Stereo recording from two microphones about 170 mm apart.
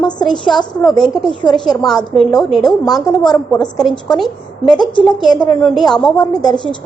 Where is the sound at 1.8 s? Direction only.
Centre (ahead or behind).